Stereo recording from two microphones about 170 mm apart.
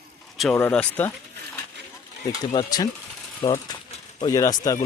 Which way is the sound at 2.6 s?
25° left (ahead or behind).